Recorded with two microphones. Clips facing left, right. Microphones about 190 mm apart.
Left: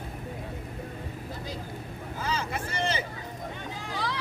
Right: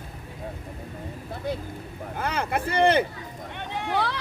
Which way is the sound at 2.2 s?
60° right (ahead or behind).